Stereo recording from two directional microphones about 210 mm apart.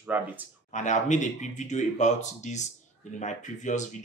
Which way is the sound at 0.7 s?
35° left (ahead or behind).